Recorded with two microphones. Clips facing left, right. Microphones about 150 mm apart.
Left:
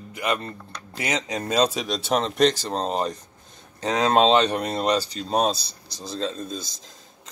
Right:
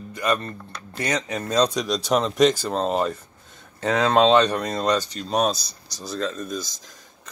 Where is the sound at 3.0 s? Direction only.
35° left (ahead or behind).